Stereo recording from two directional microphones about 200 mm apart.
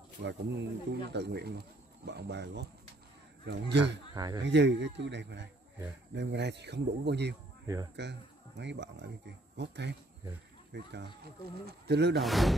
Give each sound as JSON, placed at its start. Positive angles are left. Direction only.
{"t": 0.2, "sound": "speech", "side_deg": -60}
{"t": 4.1, "sound": "speech", "side_deg": -20}
{"t": 4.4, "sound": "speech", "side_deg": -60}
{"t": 7.6, "sound": "speech", "side_deg": -15}
{"t": 7.9, "sound": "speech", "side_deg": -55}
{"t": 12.2, "sound": "speech", "side_deg": 0}